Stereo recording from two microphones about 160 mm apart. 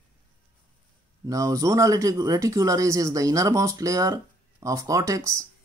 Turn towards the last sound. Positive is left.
turn(degrees=-20)  # may be behind; listen again after turning